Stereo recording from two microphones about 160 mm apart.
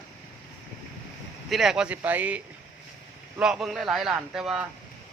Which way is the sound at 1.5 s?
Centre (ahead or behind).